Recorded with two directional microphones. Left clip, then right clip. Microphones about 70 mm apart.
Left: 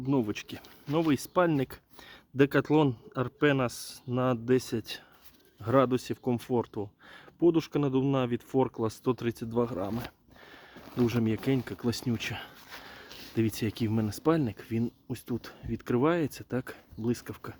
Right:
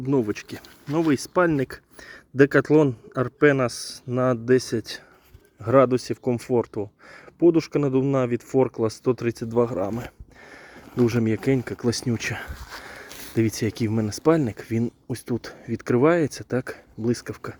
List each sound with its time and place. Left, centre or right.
0.0 s speech: centre; by 9.9 s right
10.9 s speech: right
12.3 s a sound: right
13.3 s speech: right
14.5 s speech: right
14.8 s speech: right